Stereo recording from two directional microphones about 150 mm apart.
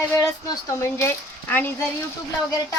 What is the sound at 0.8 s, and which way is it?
Speech, 15° left (ahead or behind).